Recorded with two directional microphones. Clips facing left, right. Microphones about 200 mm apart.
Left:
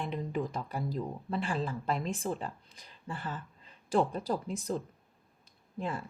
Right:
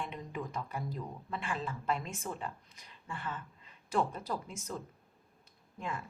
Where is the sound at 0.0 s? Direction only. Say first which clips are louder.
Left 6 dB; 35° left (ahead or behind).